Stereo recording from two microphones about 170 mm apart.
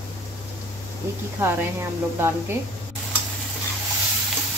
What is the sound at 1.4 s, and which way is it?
Speech, 15° right (ahead or behind).